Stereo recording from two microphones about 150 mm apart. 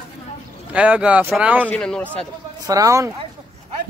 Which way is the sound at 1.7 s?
5° left (ahead or behind).